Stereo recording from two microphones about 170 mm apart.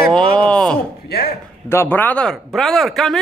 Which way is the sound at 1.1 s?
65° left (ahead or behind).